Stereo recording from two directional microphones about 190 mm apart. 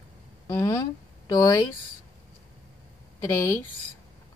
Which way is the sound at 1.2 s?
20° left (ahead or behind).